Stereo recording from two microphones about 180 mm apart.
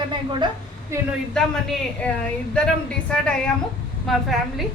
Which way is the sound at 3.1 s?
5° left (ahead or behind).